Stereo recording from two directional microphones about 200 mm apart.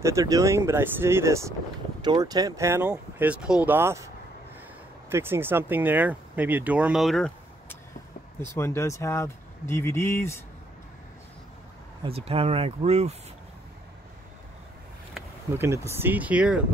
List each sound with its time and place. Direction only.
0.0 s speech: 15° right (ahead or behind)
5.1 s speech: 10° right (ahead or behind); by 10.3 s 15° left (ahead or behind)
12.0 s speech: 30° right (ahead or behind)
15.1 s speech: 10° right (ahead or behind)